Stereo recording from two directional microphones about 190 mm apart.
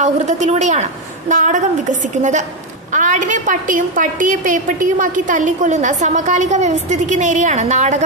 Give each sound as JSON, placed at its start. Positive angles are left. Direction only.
{"t": 0.0, "sound": "a woman's voice", "side_deg": -40}